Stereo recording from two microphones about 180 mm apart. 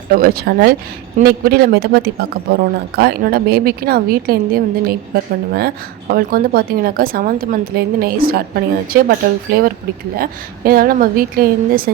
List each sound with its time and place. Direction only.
0.1 s a woman's voice: 55° right (ahead or behind)